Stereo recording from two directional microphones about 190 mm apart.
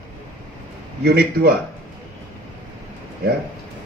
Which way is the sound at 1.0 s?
55° right (ahead or behind).